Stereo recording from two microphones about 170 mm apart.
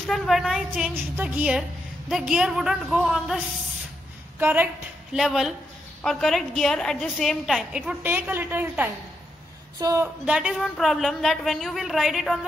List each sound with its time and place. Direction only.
0.0 s a woman's voice: centre (ahead or behind); by 10.0 s 20° right (ahead or behind)
10.2 s a woman's voice: 5° right (ahead or behind)